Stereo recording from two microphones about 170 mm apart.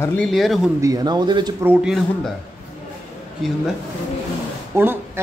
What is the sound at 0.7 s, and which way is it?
Speech, 20° right (ahead or behind).